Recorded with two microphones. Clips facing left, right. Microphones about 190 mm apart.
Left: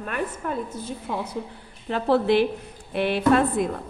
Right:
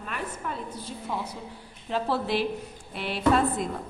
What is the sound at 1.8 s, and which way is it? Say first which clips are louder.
A woman's voice: left 7 dB; 60° left (ahead or behind).